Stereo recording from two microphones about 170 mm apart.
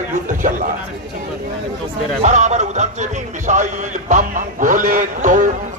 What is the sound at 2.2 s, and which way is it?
Speech, 45° right (ahead or behind).